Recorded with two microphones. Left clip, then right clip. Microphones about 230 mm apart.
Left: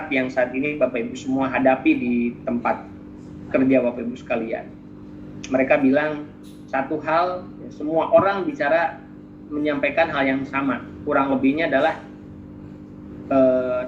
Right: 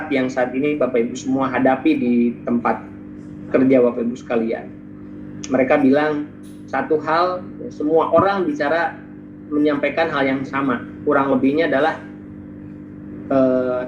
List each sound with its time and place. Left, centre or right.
0.1 s speech: right
13.2 s mantra: right